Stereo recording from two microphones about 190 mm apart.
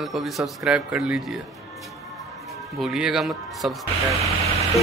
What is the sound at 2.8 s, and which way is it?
Speech, 5° right (ahead or behind).